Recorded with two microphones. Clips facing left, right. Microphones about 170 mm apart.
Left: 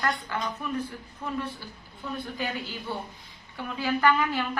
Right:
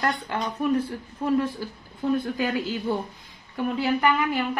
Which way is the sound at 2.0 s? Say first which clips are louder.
Right 9 dB; 45° right (ahead or behind).